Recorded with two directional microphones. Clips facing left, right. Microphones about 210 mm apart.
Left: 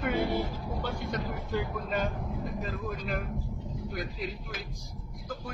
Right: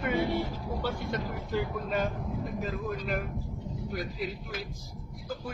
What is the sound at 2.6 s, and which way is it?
Speech, centre (ahead or behind).